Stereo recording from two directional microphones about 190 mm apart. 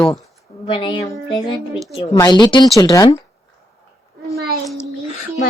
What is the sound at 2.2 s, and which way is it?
Speech, 20° left (ahead or behind).